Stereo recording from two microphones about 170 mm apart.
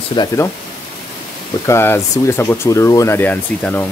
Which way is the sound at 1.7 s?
15° left (ahead or behind).